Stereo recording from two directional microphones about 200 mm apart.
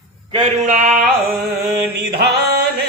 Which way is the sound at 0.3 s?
25° right (ahead or behind).